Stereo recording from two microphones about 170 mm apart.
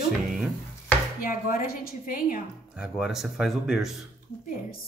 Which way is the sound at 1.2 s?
55° left (ahead or behind).